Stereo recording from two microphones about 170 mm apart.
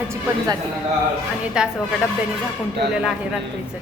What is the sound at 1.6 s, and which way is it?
Speech, 5° right (ahead or behind).